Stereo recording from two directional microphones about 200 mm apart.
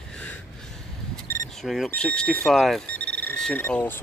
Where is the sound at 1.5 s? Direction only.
Centre (ahead or behind).